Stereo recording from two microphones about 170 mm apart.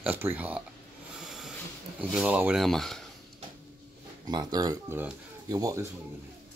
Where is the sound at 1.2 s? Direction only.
Centre (ahead or behind).